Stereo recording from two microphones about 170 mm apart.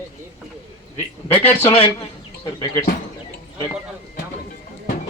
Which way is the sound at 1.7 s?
30° left (ahead or behind).